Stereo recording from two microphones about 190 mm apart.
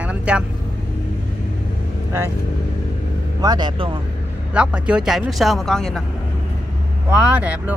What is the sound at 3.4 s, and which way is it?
Speech, 20° right (ahead or behind).